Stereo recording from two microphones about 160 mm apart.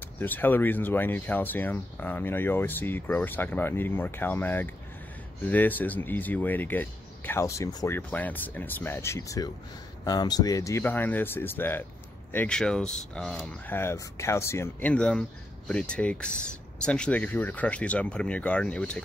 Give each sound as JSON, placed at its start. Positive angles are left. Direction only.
{"t": 0.2, "sound": "speech", "side_deg": 10}